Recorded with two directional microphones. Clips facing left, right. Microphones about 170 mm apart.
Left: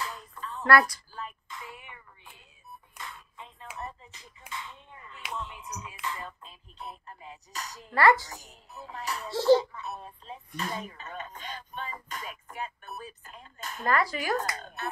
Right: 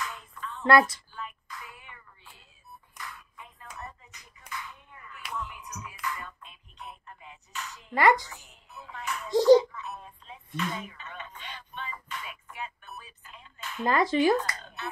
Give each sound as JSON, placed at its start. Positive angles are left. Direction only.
{"t": 0.0, "sound": "a sound", "side_deg": 30}
{"t": 0.7, "sound": "speech", "side_deg": -25}
{"t": 1.5, "sound": "a sound", "side_deg": 25}
{"t": 5.3, "sound": "music", "side_deg": 25}
{"t": 7.9, "sound": "a woman's voice", "side_deg": -15}
{"t": 8.3, "sound": "music", "side_deg": 40}
{"t": 9.3, "sound": "a woman's voice", "side_deg": -15}
{"t": 9.6, "sound": "a sound", "side_deg": 35}
{"t": 13.8, "sound": "speech", "side_deg": -20}
{"t": 14.3, "sound": "speech", "side_deg": 45}